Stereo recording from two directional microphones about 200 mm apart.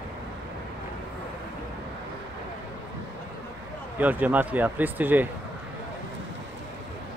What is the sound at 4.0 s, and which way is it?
Speech, 10° right (ahead or behind).